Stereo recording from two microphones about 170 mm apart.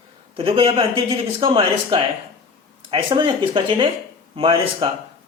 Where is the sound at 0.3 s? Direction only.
30° right (ahead or behind).